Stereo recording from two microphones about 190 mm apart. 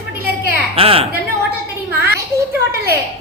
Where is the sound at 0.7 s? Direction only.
30° right (ahead or behind).